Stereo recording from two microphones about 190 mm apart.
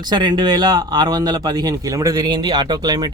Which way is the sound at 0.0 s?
20° right (ahead or behind).